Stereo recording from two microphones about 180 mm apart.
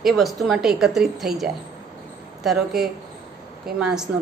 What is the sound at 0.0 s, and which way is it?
Speech, centre (ahead or behind).